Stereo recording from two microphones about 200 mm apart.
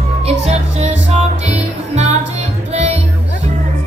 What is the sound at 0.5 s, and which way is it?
Music, 35° right (ahead or behind).